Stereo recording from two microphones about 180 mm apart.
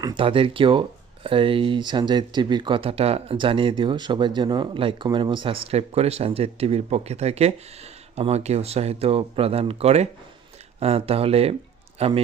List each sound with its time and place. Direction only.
0.0 s speech: 25° right (ahead or behind)